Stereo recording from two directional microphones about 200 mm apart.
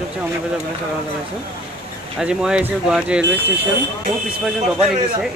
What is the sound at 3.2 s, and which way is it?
Speech, 65° right (ahead or behind).